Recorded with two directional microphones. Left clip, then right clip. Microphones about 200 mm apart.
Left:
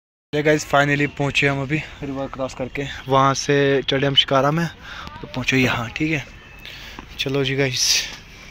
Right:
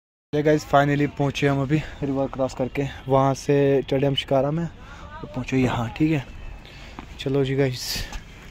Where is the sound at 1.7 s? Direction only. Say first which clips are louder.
Even; 30° right (ahead or behind).